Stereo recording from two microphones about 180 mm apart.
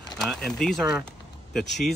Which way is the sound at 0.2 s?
5° left (ahead or behind).